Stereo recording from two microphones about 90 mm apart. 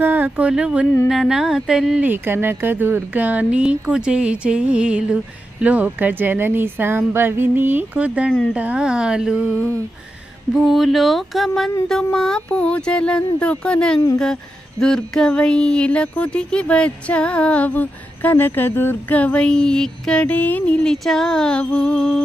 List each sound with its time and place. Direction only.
0.0 s speech: 20° right (ahead or behind); by 2.0 s 5° right (ahead or behind)
2.0 s speech: 20° right (ahead or behind)
9.6 s music: 20° left (ahead or behind)
10.5 s speech: centre (ahead or behind)
20.2 s music: 20° left (ahead or behind)
20.8 s speech: centre (ahead or behind)